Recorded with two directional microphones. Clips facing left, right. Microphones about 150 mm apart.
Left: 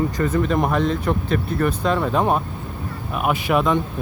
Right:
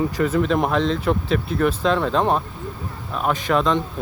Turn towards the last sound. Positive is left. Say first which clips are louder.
# left 1 dB
turn(degrees=10)  # may be behind; listen again after turning